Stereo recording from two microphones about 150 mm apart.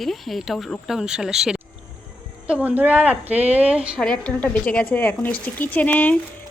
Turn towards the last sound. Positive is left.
turn(degrees=10)  # may be behind; listen again after turning